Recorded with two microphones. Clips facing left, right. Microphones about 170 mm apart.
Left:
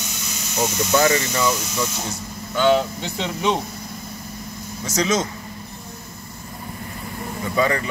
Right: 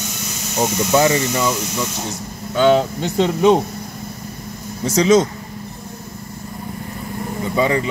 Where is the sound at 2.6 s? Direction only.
45° right (ahead or behind).